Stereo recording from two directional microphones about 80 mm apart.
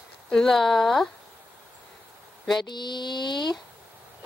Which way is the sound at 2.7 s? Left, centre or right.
Left.